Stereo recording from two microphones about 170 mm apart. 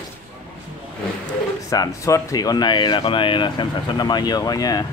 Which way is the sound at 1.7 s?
20° left (ahead or behind).